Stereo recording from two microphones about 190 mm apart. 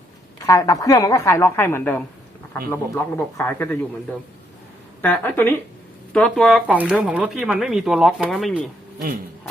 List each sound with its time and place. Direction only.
0.3 s a woman's voice: 15° left (ahead or behind)
5.0 s a woman's voice: 10° left (ahead or behind)